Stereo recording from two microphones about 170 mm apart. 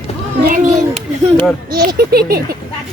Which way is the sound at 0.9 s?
5° left (ahead or behind).